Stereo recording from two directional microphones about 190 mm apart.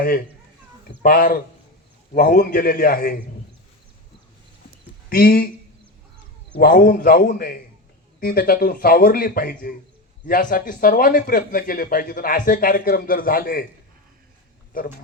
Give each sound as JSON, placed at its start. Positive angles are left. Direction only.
{"t": 1.0, "sound": "speech", "side_deg": 50}
{"t": 5.0, "sound": "speech", "side_deg": 50}
{"t": 6.6, "sound": "speech", "side_deg": 50}